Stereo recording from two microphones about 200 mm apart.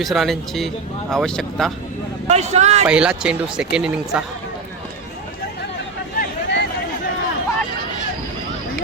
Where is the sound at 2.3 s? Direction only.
35° right (ahead or behind).